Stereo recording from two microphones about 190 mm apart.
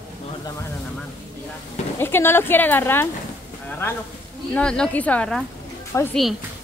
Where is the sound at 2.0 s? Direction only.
10° left (ahead or behind).